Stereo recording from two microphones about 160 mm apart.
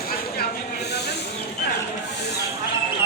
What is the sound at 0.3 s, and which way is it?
Snake, 90° left.